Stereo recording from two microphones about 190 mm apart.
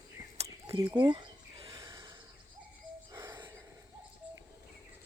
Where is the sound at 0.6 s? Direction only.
20° right (ahead or behind).